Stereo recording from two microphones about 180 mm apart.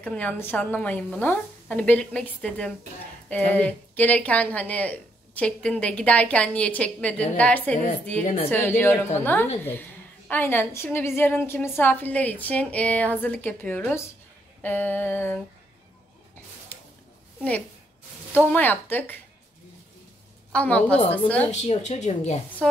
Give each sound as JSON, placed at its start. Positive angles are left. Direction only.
{"t": 0.0, "sound": "speech", "side_deg": 5}
{"t": 18.3, "sound": "speech", "side_deg": 10}
{"t": 20.5, "sound": "speech", "side_deg": 5}
{"t": 21.5, "sound": "speech", "side_deg": 40}
{"t": 22.6, "sound": "speech", "side_deg": 5}